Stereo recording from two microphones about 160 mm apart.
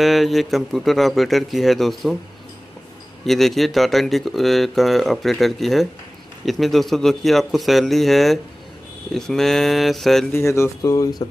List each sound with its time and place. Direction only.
0.0 s speech: centre (ahead or behind)
3.3 s speech: centre (ahead or behind)
10.3 s speech: 15° left (ahead or behind)